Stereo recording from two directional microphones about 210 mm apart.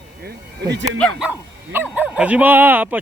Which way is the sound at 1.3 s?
10° right (ahead or behind).